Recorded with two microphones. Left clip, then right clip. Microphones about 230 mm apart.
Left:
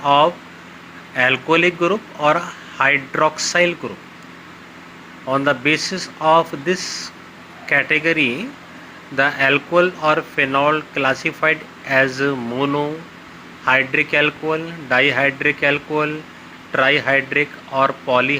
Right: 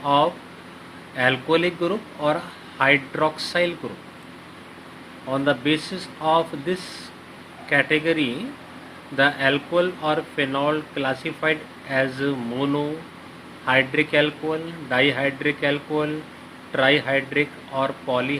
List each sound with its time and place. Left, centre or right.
0.0 s speech: left
5.3 s speech: left
6.7 s speech: centre
7.7 s speech: left